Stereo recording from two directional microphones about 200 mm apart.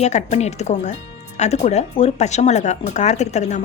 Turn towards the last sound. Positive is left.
turn(degrees=35)  # may be behind; listen again after turning